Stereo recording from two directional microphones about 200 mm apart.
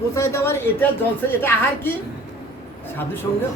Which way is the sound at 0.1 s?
15° left (ahead or behind).